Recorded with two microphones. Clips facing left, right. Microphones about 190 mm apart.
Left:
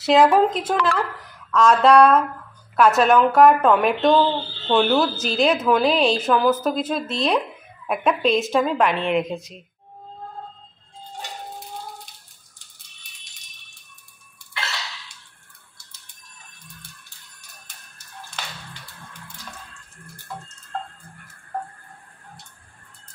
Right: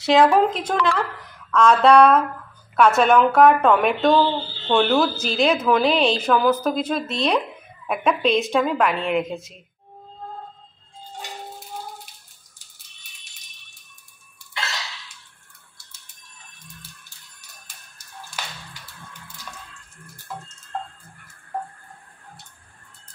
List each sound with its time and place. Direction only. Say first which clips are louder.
0.0 s a woman's voice: even; centre (ahead or behind)